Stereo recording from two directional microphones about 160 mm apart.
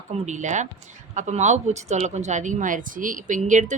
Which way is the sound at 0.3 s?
50° right (ahead or behind).